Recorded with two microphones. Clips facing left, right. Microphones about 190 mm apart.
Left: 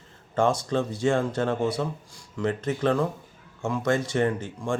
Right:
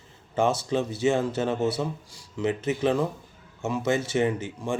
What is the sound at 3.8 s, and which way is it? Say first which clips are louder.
Speech: left 1 dB; 5° right (ahead or behind).